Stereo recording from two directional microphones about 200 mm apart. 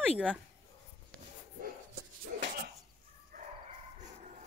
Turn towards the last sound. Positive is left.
turn(degrees=-40)  # may be behind; listen again after turning